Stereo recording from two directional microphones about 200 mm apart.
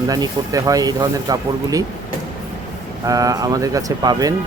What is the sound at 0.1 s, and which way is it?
Speech, 20° right (ahead or behind).